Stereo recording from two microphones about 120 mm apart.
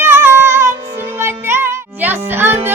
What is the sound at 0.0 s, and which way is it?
Music, 20° right (ahead or behind).